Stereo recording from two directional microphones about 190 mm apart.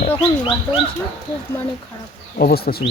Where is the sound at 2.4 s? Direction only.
55° left (ahead or behind).